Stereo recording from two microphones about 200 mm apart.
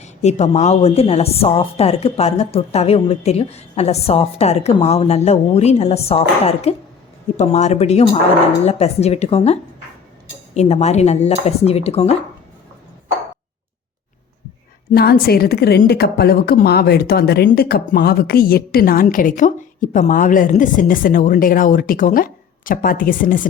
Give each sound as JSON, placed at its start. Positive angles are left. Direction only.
{"t": 0.0, "sound": "a woman's voice", "side_deg": 35}
{"t": 14.9, "sound": "a woman's voice", "side_deg": 50}